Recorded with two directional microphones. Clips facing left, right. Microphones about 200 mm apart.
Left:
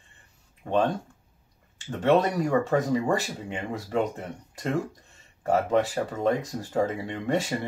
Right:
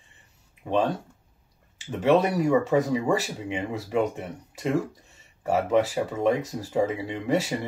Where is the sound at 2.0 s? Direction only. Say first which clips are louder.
Right 1 dB; 5° right (ahead or behind).